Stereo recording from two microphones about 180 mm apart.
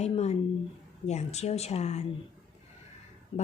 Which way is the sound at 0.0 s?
35° left (ahead or behind).